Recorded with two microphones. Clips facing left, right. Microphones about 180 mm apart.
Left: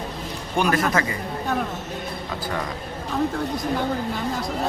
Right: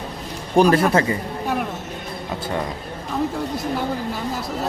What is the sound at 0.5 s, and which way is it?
Speech, 35° right (ahead or behind).